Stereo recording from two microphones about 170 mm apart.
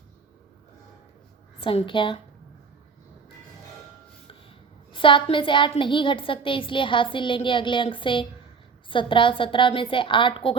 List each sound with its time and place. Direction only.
1.6 s a woman's voice: 30° left (ahead or behind)
4.9 s a woman's voice: 30° left (ahead or behind)